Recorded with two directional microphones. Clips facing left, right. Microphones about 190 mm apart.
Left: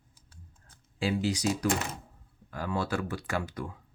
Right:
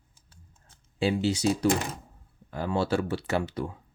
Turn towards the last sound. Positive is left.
turn(degrees=-25)  # may be behind; listen again after turning